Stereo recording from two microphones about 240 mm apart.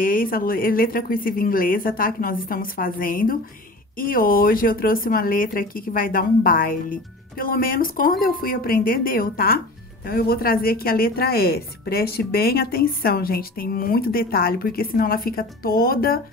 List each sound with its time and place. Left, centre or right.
0.0 s a woman's voice: left